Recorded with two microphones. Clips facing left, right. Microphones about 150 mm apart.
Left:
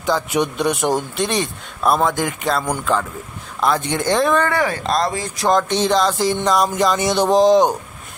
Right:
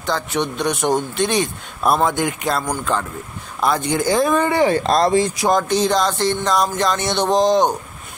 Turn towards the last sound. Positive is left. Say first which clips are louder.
# left 3 dB
turn(degrees=0)  # may be behind; listen again after turning